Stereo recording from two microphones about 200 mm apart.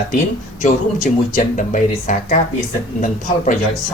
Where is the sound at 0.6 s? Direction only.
40° left (ahead or behind).